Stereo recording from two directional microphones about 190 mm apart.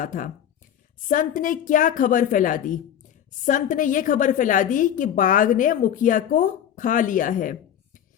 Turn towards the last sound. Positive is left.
turn(degrees=45)  # may be behind; listen again after turning